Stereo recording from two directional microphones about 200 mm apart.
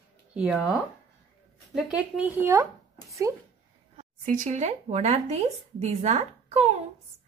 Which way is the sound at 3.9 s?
40° right (ahead or behind).